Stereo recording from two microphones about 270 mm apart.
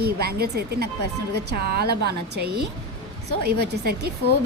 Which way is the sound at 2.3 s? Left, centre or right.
Right.